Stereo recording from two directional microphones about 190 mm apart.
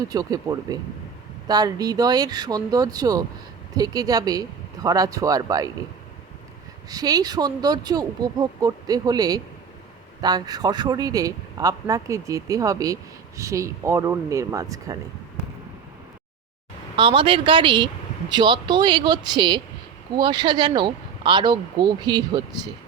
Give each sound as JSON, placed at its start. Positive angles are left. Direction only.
{"t": 0.1, "sound": "speech", "side_deg": -20}
{"t": 6.9, "sound": "speech", "side_deg": -20}
{"t": 17.0, "sound": "speech", "side_deg": -25}